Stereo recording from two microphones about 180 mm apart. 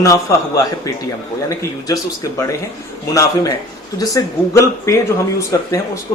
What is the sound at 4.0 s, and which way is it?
Speech, 20° left (ahead or behind).